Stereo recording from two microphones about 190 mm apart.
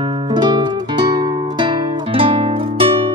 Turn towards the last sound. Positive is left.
turn(degrees=-30)  # may be behind; listen again after turning